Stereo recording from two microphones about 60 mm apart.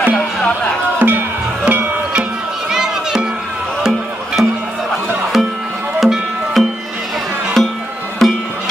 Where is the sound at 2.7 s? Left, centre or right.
Centre.